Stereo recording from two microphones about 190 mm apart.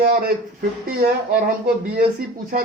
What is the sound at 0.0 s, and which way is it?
Speech, 50° right (ahead or behind).